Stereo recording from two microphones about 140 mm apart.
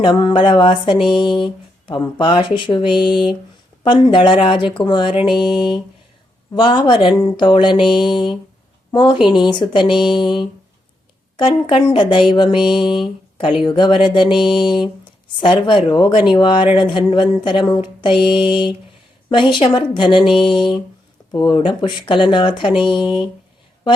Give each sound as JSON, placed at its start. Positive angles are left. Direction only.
{"t": 0.0, "sound": "a woman's voice", "side_deg": 35}